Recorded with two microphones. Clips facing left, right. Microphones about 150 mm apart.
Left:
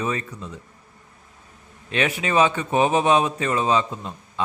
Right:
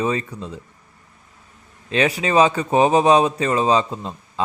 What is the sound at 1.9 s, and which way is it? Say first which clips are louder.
A man's voice: right 4 dB; 30° right (ahead or behind).